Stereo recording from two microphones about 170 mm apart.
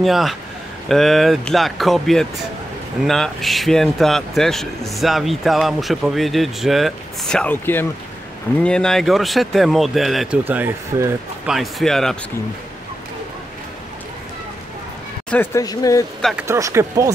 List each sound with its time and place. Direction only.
0.0 s a man's voice: centre (ahead or behind)
11.4 s a man's voice: centre (ahead or behind)
15.2 s speech: 10° left (ahead or behind)
15.6 s speech: 20° left (ahead or behind)
16.3 s speech: 15° right (ahead or behind)